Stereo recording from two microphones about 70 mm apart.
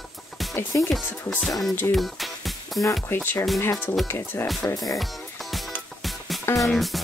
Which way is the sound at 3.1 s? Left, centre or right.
Left.